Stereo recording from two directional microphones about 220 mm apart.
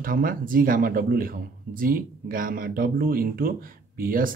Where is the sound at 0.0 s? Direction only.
40° right (ahead or behind).